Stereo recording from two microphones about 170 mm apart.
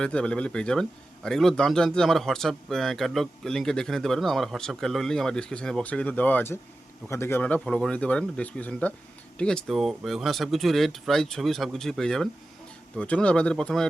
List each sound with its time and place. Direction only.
0.0 s a man's voice: 5° left (ahead or behind)